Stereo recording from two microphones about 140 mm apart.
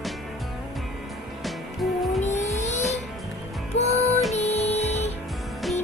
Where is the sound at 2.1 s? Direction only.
55° left (ahead or behind).